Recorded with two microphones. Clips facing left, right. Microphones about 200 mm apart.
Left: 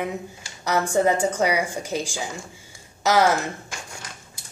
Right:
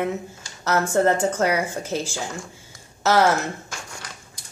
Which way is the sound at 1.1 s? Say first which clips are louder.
Right 1 dB; 10° left (ahead or behind).